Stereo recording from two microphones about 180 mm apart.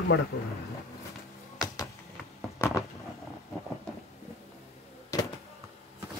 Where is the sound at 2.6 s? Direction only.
15° left (ahead or behind).